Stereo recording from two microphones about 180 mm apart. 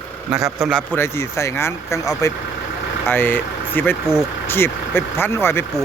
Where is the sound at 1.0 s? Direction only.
15° left (ahead or behind).